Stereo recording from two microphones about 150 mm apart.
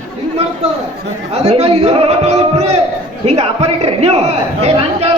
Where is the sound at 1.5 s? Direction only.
45° right (ahead or behind).